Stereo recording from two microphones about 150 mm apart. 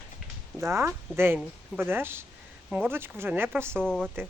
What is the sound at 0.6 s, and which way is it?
Speech, 15° right (ahead or behind).